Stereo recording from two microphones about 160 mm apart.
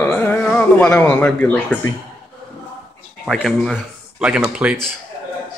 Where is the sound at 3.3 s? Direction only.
Centre (ahead or behind).